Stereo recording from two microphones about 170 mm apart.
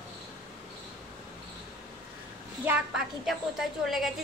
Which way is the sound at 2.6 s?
5° right (ahead or behind).